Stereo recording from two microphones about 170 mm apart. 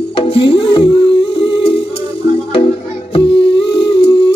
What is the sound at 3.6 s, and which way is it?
Humming, 80° left.